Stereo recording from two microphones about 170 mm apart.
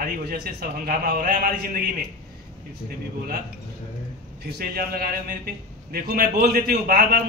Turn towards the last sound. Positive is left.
turn(degrees=-65)  # may be behind; listen again after turning